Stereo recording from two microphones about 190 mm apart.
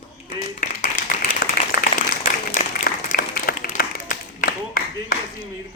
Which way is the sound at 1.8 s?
45° left (ahead or behind).